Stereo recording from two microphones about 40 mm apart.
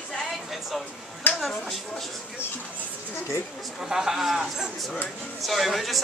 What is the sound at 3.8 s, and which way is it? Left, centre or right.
Speech, centre.